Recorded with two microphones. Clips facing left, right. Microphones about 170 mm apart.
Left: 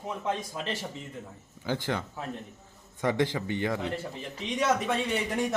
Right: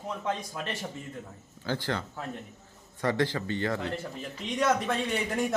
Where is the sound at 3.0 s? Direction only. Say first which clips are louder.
Left 1 dB; 20° left (ahead or behind).